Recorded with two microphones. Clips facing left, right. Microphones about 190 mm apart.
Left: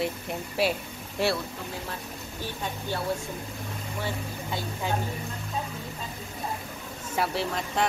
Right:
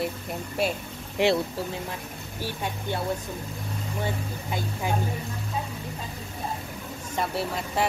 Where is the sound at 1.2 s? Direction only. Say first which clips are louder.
Right 4 dB; 15° right (ahead or behind).